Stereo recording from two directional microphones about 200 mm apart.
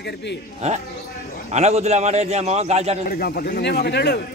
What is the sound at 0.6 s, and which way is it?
A man's voice, 35° right (ahead or behind).